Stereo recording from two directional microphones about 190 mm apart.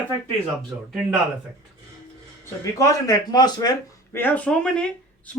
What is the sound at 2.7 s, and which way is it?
Speech, 15° left (ahead or behind).